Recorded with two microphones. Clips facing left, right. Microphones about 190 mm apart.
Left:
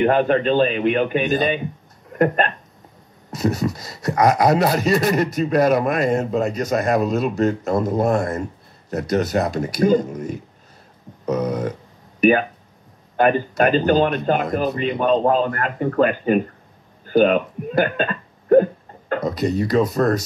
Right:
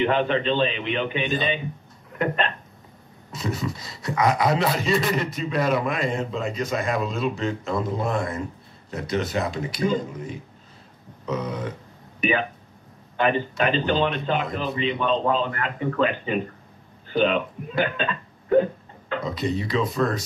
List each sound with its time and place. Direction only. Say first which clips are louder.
0.0 s speech: left 5 dB; 45° left (ahead or behind)